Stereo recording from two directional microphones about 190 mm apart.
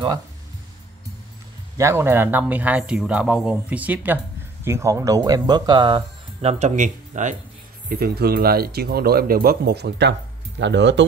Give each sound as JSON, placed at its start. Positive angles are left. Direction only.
{"t": 1.8, "sound": "speech", "side_deg": -15}
{"t": 7.9, "sound": "speech", "side_deg": -55}